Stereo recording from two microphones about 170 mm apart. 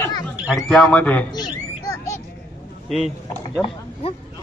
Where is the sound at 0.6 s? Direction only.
5° left (ahead or behind).